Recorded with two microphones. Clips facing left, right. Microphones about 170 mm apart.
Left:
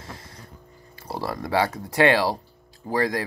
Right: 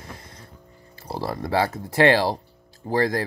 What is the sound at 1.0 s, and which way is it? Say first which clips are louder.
Speech: right 1 dB; 25° right (ahead or behind).